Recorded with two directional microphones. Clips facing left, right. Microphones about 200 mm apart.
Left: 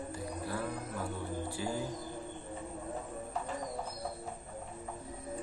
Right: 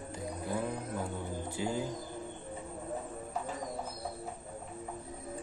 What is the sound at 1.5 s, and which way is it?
Speech, 20° right (ahead or behind).